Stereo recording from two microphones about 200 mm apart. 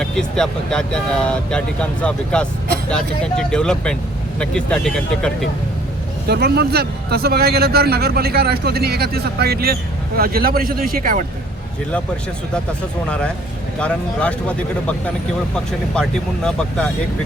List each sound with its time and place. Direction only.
0.0 s speech: 5° left (ahead or behind)
6.2 s a man's voice: 55° right (ahead or behind)
13.7 s speech: 5° left (ahead or behind)